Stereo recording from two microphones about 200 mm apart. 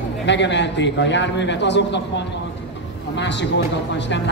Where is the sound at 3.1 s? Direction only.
60° left (ahead or behind).